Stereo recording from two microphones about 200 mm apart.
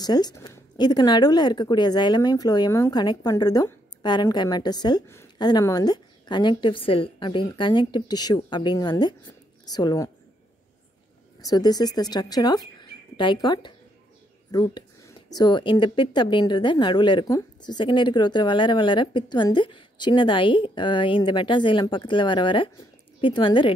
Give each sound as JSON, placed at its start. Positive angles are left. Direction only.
{"t": 0.0, "sound": "speech", "side_deg": 20}
{"t": 11.4, "sound": "speech", "side_deg": 20}
{"t": 14.5, "sound": "a sound", "side_deg": 20}
{"t": 15.3, "sound": "speech", "side_deg": 20}